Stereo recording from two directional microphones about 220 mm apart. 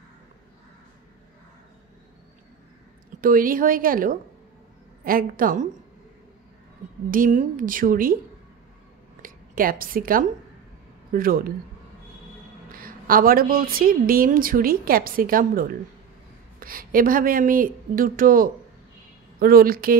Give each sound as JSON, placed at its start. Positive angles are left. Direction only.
{"t": 3.2, "sound": "a woman's voice", "side_deg": -40}
{"t": 7.1, "sound": "a woman's voice", "side_deg": -35}
{"t": 9.2, "sound": "a woman's voice", "side_deg": -40}
{"t": 12.7, "sound": "a woman's voice", "side_deg": -40}